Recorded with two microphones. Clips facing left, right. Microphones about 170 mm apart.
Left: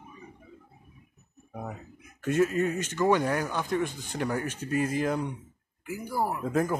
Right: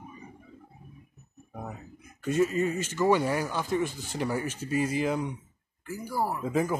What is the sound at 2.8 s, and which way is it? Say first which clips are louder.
Speech: right 1 dB; 5° right (ahead or behind).